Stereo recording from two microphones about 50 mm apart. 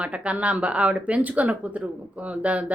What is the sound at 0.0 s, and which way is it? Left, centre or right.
Speech, right.